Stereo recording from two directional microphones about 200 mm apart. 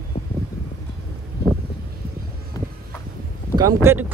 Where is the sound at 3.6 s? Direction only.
15° right (ahead or behind).